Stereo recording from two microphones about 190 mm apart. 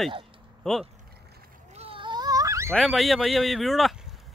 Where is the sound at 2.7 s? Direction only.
Centre (ahead or behind).